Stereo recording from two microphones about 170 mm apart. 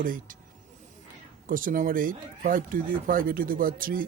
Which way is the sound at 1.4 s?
55° right (ahead or behind).